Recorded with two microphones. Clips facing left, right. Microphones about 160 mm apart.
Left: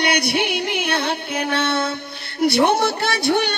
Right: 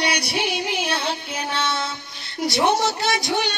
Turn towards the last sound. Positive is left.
turn(degrees=60)  # may be behind; listen again after turning